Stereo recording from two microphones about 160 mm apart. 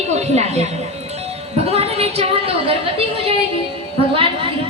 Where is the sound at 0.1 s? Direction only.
45° right (ahead or behind).